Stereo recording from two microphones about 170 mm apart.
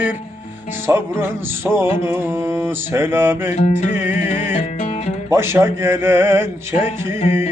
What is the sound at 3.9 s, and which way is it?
Music, 15° right (ahead or behind).